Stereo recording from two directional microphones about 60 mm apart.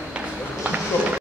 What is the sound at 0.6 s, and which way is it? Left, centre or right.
Run, right.